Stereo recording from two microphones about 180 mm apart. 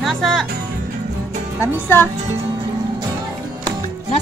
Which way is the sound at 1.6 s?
10° left (ahead or behind).